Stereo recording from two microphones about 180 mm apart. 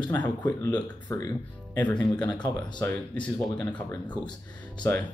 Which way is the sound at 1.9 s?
25° left (ahead or behind).